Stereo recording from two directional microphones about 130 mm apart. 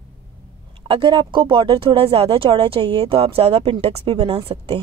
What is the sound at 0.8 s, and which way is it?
Speech, 40° right (ahead or behind).